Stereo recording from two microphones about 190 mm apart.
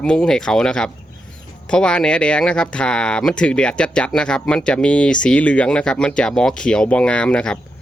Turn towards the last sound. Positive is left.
turn(degrees=5)  # may be behind; listen again after turning